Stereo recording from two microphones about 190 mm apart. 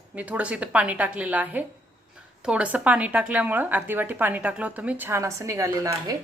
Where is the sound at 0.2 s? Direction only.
5° right (ahead or behind).